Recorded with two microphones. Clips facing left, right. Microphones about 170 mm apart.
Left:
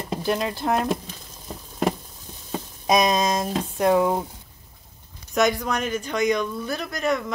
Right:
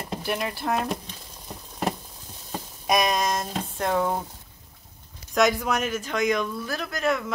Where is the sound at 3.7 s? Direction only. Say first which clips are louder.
Left 5 dB; 10° left (ahead or behind).